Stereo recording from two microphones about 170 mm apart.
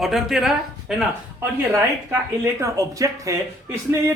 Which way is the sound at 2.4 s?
20° right (ahead or behind).